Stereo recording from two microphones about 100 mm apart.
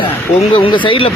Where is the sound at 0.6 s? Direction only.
55° left (ahead or behind).